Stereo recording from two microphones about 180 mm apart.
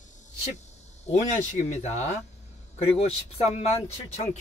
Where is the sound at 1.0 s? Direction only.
40° left (ahead or behind).